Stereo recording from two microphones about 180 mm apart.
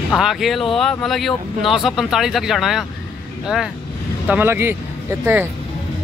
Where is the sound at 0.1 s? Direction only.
Centre (ahead or behind).